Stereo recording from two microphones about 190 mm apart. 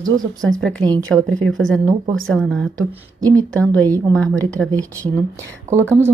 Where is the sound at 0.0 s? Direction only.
20° right (ahead or behind).